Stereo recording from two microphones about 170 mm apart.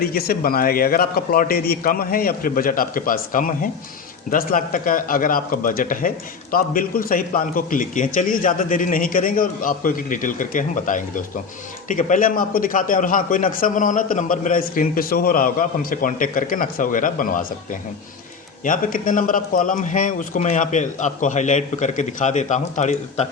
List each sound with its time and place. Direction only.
0.0 s a man's voice: 60° left (ahead or behind); by 23.3 s 40° left (ahead or behind)